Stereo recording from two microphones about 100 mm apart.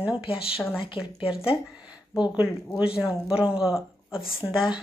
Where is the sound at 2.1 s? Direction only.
10° right (ahead or behind).